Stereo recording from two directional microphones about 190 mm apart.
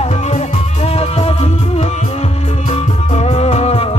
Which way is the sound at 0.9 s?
30° left (ahead or behind).